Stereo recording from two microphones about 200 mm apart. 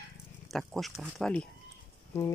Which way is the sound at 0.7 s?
Centre (ahead or behind).